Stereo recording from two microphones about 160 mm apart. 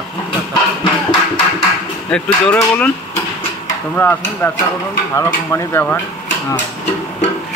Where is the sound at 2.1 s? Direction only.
10° left (ahead or behind).